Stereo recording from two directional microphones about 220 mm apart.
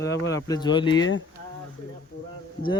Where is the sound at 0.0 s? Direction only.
15° left (ahead or behind).